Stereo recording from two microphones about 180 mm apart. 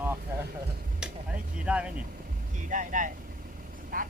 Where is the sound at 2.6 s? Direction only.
45° right (ahead or behind).